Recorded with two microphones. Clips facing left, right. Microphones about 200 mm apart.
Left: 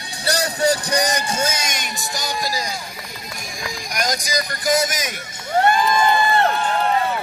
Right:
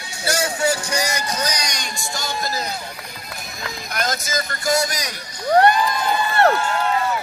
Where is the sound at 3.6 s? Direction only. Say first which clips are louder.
Left 1 dB; 15° left (ahead or behind).